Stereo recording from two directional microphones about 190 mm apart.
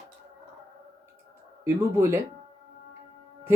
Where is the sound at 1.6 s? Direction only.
15° right (ahead or behind).